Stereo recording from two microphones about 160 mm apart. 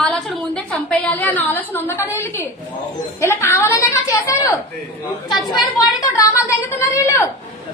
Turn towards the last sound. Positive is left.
turn(degrees=15)  # may be behind; listen again after turning